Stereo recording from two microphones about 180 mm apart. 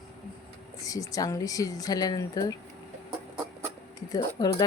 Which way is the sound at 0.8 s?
20° left (ahead or behind).